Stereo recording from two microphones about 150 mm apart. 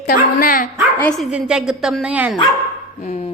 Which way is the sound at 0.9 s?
10° left (ahead or behind).